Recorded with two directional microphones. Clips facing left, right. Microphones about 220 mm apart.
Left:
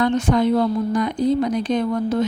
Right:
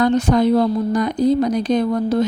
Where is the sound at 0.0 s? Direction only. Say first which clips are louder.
Right 3 dB; 40° right (ahead or behind).